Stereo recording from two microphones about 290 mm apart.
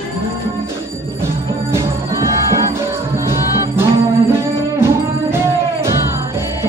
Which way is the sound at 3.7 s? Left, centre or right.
Centre.